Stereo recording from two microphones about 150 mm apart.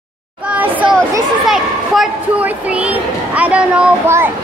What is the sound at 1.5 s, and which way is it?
Speech, 5° right (ahead or behind).